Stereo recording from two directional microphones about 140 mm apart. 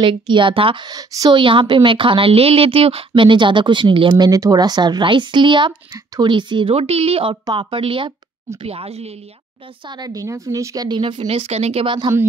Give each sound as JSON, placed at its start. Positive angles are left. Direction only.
{"t": 0.0, "sound": "a woman's voice", "side_deg": -35}
{"t": 9.8, "sound": "a woman's voice", "side_deg": -30}